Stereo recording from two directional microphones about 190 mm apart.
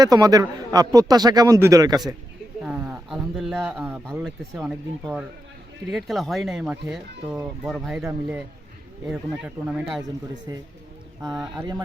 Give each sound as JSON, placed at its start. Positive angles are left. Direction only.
{"t": 0.0, "sound": "a man's voice", "side_deg": -20}
{"t": 2.6, "sound": "speech", "side_deg": -5}
{"t": 10.5, "sound": "a man's voice", "side_deg": -20}